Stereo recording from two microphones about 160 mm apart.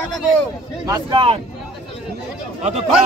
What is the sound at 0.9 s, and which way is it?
Speech, 25° right (ahead or behind).